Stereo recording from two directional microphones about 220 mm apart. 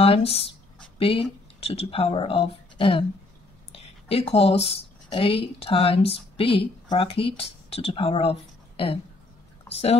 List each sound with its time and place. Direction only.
0.0 s speech: 25° left (ahead or behind)